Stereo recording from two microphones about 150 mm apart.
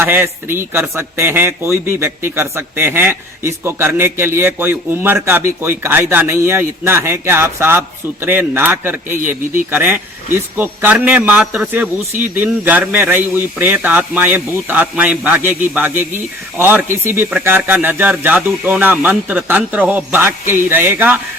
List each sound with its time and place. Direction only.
0.0 s a man's voice: 15° right (ahead or behind)